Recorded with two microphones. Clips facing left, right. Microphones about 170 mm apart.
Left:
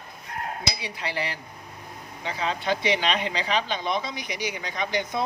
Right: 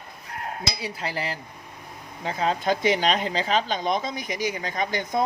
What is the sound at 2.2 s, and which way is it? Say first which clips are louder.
Speech: right 4 dB; 40° right (ahead or behind).